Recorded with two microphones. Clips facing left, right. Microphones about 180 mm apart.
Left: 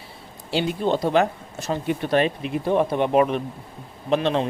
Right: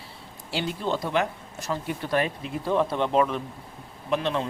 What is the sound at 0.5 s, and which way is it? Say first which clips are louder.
Speech: left 6 dB; 15° left (ahead or behind).